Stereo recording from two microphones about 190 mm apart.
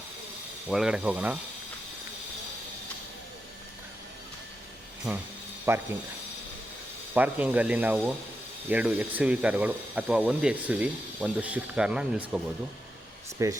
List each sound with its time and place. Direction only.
0.7 s speech: centre (ahead or behind)
5.7 s speech: 15° right (ahead or behind)
7.1 s speech: 10° right (ahead or behind)
13.4 s speech: 15° right (ahead or behind)